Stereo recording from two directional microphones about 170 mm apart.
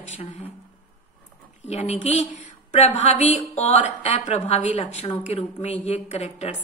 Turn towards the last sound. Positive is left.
turn(degrees=40)  # may be behind; listen again after turning